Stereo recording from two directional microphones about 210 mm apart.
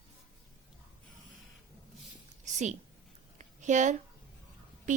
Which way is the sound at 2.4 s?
35° right (ahead or behind).